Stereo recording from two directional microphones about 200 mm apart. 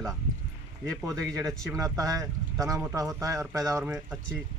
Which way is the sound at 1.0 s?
15° right (ahead or behind).